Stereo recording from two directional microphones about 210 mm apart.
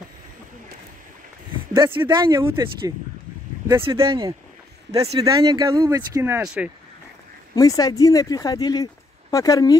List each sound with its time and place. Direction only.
1.7 s speech: 20° right (ahead or behind); by 6.7 s 5° right (ahead or behind)
7.5 s speech: 15° left (ahead or behind)